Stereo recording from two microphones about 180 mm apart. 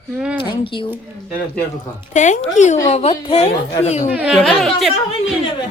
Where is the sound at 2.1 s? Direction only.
40° left (ahead or behind).